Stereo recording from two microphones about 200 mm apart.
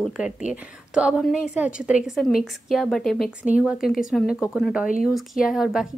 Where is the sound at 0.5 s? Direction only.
5° right (ahead or behind).